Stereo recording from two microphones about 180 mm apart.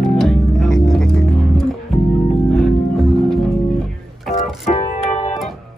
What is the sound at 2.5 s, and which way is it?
Music, centre (ahead or behind).